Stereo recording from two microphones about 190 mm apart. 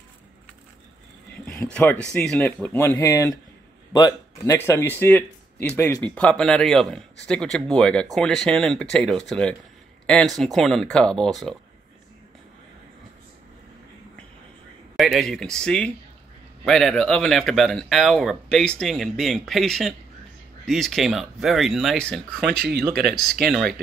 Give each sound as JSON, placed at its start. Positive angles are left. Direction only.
{"t": 1.5, "sound": "a man's voice", "side_deg": 10}
{"t": 15.0, "sound": "a man's voice", "side_deg": 0}
{"t": 22.5, "sound": "speech", "side_deg": -55}
{"t": 23.5, "sound": "a man's voice", "side_deg": 0}